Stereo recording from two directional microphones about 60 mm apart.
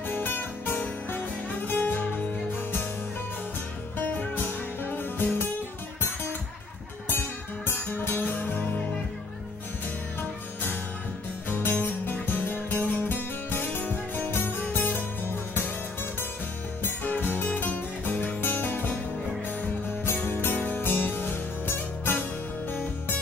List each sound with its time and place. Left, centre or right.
0.1 s music: left
4.0 s music: left
7.6 s music: left
11.4 s music: left
16.8 s music: left
20.2 s music: left